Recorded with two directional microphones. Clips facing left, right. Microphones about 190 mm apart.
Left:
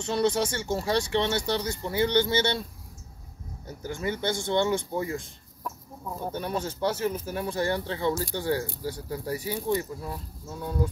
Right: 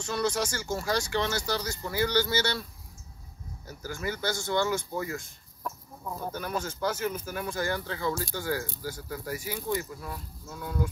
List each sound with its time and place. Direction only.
0.0 s speech: 30° left (ahead or behind)
3.6 s speech: 25° left (ahead or behind)